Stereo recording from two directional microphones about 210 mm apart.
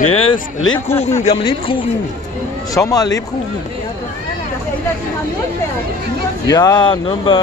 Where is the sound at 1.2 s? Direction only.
25° left (ahead or behind).